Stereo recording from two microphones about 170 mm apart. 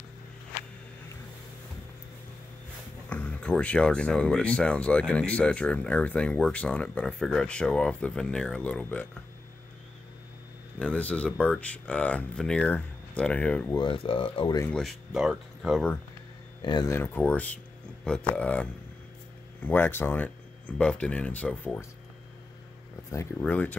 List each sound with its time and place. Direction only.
3.1 s speech: 10° left (ahead or behind)
10.8 s speech: 5° left (ahead or behind)
13.7 s speech: 30° left (ahead or behind)
14.7 s speech: centre (ahead or behind)
16.6 s speech: 20° left (ahead or behind)
23.4 s speech: 10° left (ahead or behind)